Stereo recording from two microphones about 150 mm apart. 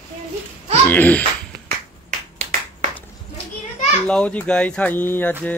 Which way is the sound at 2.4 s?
50° right (ahead or behind).